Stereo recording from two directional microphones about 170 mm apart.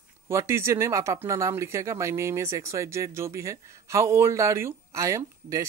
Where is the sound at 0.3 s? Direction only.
15° right (ahead or behind).